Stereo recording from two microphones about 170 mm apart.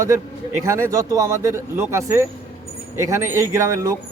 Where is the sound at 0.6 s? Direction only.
15° right (ahead or behind).